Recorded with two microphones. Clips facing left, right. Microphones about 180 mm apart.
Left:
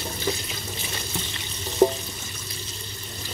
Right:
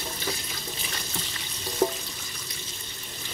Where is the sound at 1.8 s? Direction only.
30° left (ahead or behind).